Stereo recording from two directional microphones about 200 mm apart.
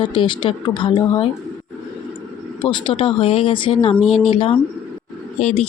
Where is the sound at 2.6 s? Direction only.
25° left (ahead or behind).